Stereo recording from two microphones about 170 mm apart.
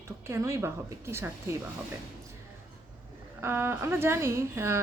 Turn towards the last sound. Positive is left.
turn(degrees=-15)  # may be behind; listen again after turning